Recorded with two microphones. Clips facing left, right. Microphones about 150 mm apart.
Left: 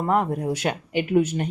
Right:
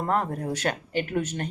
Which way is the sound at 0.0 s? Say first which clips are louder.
Left 4 dB; 10° left (ahead or behind).